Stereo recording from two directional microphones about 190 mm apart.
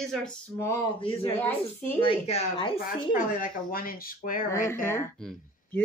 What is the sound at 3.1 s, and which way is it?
Speech, 45° left (ahead or behind).